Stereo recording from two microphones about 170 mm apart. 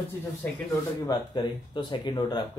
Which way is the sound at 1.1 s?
25° left (ahead or behind).